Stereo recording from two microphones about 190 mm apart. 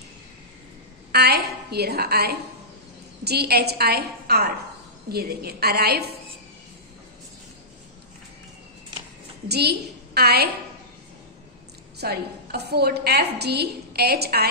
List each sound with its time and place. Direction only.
1.1 s a woman's voice: 55° right (ahead or behind)
9.5 s a woman's voice: 60° right (ahead or behind)
12.0 s a woman's voice: 55° right (ahead or behind)